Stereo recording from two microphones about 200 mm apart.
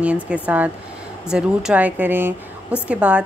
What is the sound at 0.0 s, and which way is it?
A woman's voice, 5° right (ahead or behind).